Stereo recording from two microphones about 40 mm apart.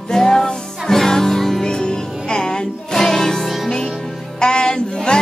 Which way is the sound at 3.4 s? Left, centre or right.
Centre.